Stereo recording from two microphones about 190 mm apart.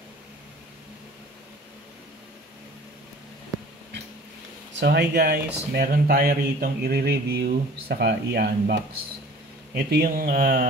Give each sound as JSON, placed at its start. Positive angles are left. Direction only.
{"t": 4.7, "sound": "speech", "side_deg": -60}
{"t": 9.8, "sound": "speech", "side_deg": -55}